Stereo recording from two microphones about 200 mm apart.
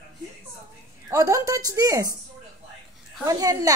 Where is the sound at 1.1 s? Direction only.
15° right (ahead or behind).